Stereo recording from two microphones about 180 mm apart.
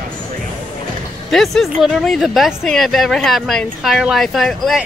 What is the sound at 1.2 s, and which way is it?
Speech, centre (ahead or behind).